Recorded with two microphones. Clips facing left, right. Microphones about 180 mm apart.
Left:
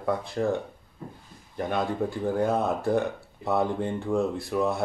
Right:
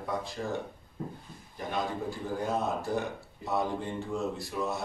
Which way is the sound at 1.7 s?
60° left (ahead or behind).